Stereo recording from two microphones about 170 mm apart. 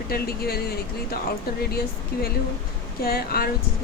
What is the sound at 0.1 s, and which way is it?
Speech, 65° left (ahead or behind).